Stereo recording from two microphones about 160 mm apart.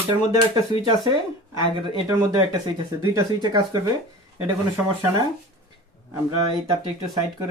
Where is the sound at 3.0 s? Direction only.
25° right (ahead or behind).